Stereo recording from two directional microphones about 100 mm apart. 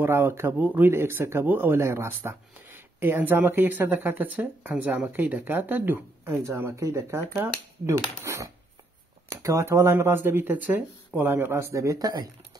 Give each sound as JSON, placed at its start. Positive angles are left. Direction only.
{"t": 0.0, "sound": "speech", "side_deg": -20}